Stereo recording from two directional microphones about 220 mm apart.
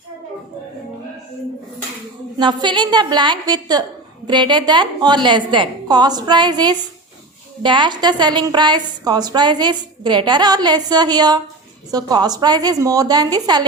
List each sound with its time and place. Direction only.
2.4 s a woman's voice: 20° right (ahead or behind)